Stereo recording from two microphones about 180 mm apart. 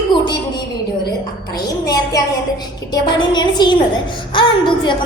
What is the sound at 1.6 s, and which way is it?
A woman's voice, 20° left (ahead or behind).